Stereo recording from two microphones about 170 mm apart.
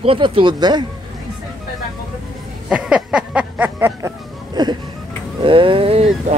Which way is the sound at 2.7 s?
5° right (ahead or behind).